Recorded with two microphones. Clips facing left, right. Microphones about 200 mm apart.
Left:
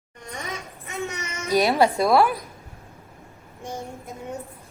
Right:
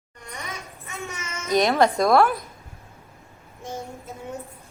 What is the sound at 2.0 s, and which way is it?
Speech, centre (ahead or behind).